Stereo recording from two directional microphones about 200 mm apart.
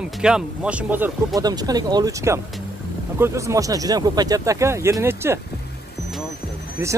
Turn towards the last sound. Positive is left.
turn(degrees=-15)  # may be behind; listen again after turning